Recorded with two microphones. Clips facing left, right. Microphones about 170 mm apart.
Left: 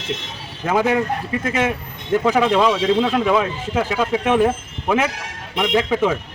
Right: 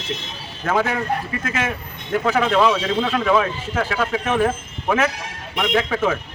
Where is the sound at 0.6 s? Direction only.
15° left (ahead or behind).